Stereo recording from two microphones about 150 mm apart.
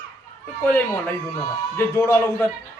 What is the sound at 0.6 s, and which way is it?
A man's voice, 10° left (ahead or behind).